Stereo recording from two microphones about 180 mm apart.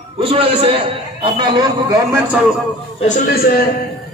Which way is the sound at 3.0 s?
55° left (ahead or behind).